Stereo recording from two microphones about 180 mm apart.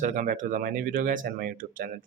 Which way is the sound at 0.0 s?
45° right (ahead or behind).